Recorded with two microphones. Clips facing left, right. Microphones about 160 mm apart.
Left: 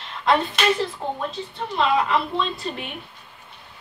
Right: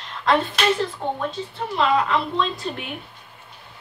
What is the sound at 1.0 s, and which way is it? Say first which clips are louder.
A woman's voice: right 2 dB; centre (ahead or behind).